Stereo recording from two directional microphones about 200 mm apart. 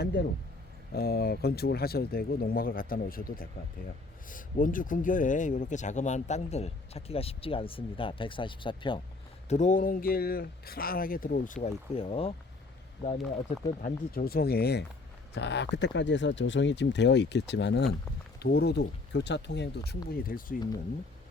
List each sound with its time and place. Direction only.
0.0 s speech: 55° left (ahead or behind); by 9.0 s 25° left (ahead or behind)
9.5 s speech: 40° left (ahead or behind)
11.9 s speech: 30° left (ahead or behind)
13.8 s speech: 45° left (ahead or behind)
20.2 s speech: 45° left (ahead or behind)